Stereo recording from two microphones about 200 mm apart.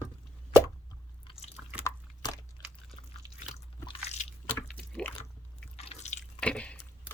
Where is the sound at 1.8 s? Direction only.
20° left (ahead or behind).